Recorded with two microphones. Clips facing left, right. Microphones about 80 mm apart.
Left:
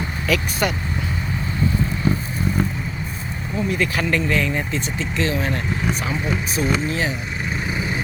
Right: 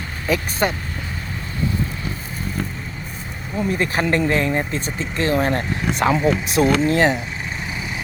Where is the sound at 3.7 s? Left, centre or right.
Right.